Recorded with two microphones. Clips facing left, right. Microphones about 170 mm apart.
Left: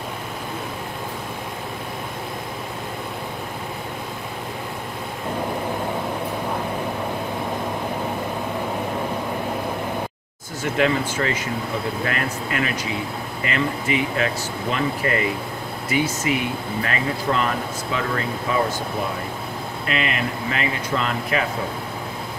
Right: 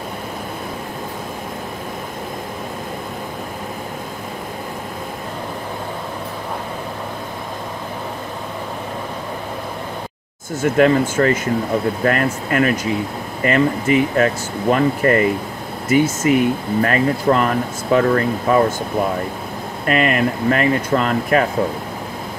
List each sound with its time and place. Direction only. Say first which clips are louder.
10.6 s speech: right 7 dB; 45° right (ahead or behind)
19.9 s speech: right 8 dB; 50° right (ahead or behind)